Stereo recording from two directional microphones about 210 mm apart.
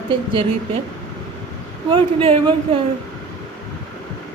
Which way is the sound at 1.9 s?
25° right (ahead or behind).